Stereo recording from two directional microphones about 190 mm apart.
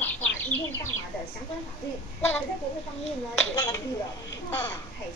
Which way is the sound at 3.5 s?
20° left (ahead or behind).